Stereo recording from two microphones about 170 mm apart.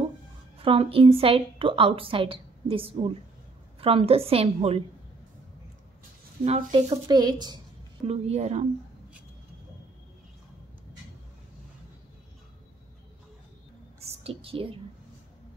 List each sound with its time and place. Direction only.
0.6 s a woman's voice: 30° right (ahead or behind)
6.4 s a woman's voice: 35° right (ahead or behind)
7.1 s a woman's voice: 25° right (ahead or behind)
8.1 s a woman's voice: 40° right (ahead or behind)
14.2 s a woman's voice: 35° right (ahead or behind)